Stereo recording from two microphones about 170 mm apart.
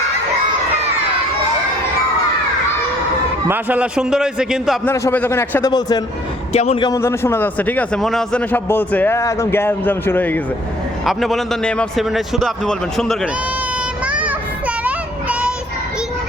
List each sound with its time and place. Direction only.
3.5 s a man's voice: 10° right (ahead or behind)
4.9 s a man's voice: 10° left (ahead or behind)
6.5 s a man's voice: 35° left (ahead or behind)
7.0 s a man's voice: 15° left (ahead or behind)
11.0 s a man's voice: centre (ahead or behind)
14.1 s child singing: 5° right (ahead or behind)